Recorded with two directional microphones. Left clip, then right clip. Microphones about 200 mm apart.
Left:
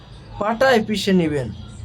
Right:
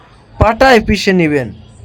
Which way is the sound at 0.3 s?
35° right (ahead or behind).